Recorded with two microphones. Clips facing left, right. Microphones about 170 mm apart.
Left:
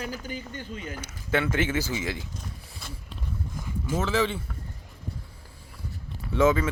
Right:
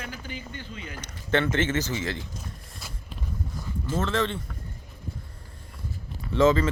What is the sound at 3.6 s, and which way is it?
Speech, 10° left (ahead or behind).